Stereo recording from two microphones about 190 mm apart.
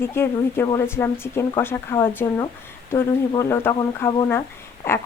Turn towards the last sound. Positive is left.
turn(degrees=10)  # may be behind; listen again after turning